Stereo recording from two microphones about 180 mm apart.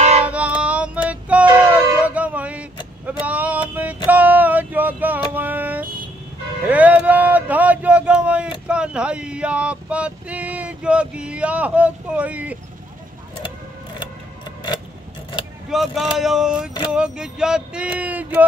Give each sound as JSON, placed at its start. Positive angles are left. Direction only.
{"t": 0.2, "sound": "female singing", "side_deg": -5}
{"t": 1.0, "sound": "a sound", "side_deg": -10}
{"t": 8.6, "sound": "male singing", "side_deg": -5}
{"t": 15.7, "sound": "speech", "side_deg": 0}